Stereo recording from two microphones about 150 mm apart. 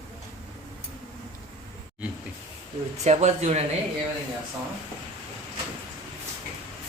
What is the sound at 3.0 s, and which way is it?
Speech, 50° right (ahead or behind).